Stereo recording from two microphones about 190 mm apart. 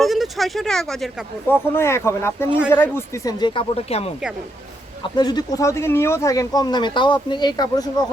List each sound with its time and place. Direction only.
0.0 s speech: centre (ahead or behind)
1.7 s speech: 15° left (ahead or behind); by 4.1 s 30° left (ahead or behind)
5.0 s speech: 20° left (ahead or behind)